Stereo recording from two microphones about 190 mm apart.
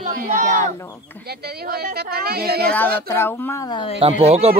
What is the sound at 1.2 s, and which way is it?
Speech, 55° right (ahead or behind).